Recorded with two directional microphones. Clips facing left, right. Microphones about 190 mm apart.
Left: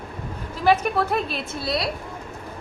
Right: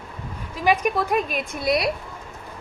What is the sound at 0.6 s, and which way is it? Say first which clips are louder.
A woman's voice: left 1 dB; 10° right (ahead or behind).